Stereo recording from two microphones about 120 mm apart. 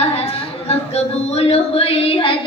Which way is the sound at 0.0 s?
60° left (ahead or behind).